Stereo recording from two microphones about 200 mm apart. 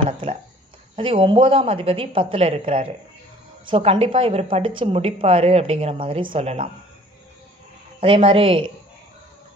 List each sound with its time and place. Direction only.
0.9 s speech: 25° right (ahead or behind)
8.0 s speech: 30° right (ahead or behind)